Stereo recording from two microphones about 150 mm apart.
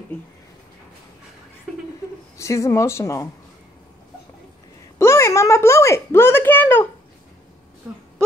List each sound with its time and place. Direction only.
2.3 s speech: 20° left (ahead or behind)
4.9 s speech: 20° left (ahead or behind)